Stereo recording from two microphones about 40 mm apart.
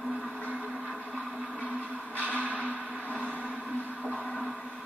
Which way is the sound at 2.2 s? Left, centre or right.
Right.